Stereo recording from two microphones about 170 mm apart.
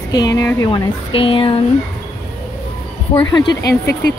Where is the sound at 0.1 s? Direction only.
20° left (ahead or behind).